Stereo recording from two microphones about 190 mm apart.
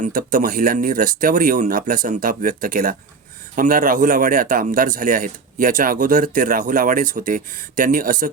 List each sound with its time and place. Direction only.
0.0 s a man's voice: 45° right (ahead or behind)